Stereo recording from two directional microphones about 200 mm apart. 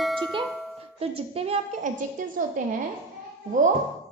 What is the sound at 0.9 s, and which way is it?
A woman's voice, 30° right (ahead or behind).